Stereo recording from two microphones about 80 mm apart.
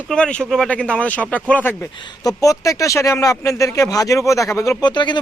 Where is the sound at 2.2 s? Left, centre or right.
Left.